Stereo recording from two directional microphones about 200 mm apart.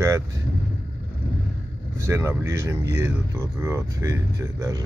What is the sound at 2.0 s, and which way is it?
Speech, 15° right (ahead or behind).